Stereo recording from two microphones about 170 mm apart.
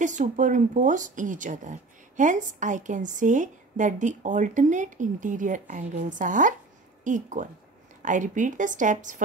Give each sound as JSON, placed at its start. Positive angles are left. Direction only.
{"t": 0.0, "sound": "speech", "side_deg": -45}